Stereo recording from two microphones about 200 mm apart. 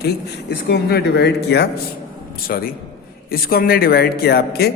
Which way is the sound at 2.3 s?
45° left (ahead or behind).